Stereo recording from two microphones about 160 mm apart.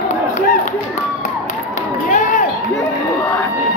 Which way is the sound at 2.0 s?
55° left (ahead or behind).